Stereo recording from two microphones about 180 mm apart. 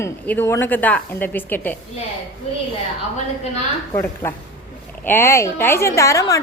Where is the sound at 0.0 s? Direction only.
15° left (ahead or behind).